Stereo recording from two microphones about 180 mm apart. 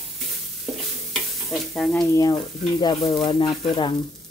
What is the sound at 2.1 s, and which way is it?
Speech, 20° left (ahead or behind).